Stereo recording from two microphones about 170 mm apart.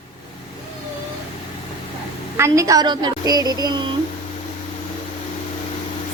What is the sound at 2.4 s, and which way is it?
A woman's voice, 20° right (ahead or behind).